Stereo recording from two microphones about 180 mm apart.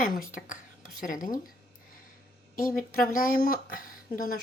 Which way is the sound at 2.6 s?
50° left (ahead or behind).